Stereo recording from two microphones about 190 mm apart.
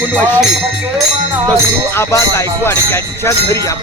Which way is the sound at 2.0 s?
15° left (ahead or behind).